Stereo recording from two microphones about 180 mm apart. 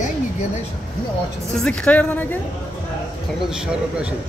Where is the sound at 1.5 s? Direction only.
5° left (ahead or behind).